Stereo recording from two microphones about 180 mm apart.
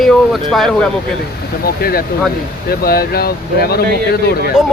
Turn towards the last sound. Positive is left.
turn(degrees=60)  # may be behind; listen again after turning